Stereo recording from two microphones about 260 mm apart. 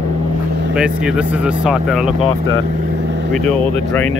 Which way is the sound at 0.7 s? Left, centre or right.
Centre.